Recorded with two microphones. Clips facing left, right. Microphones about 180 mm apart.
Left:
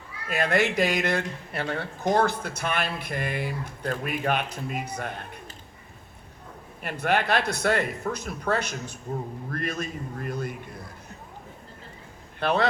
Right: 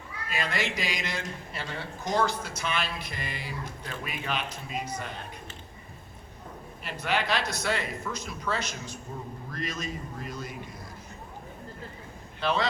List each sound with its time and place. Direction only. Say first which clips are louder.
0.3 s a man's voice: left 8 dB; 55° left (ahead or behind)
6.8 s a man's voice: left 4 dB; 55° left (ahead or behind)
12.4 s speech: left 3 dB; 60° left (ahead or behind)